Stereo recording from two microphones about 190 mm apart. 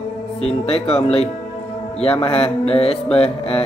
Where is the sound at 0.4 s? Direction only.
30° left (ahead or behind).